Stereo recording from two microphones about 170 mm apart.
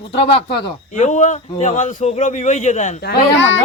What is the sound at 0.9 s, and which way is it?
Speech, 45° left (ahead or behind).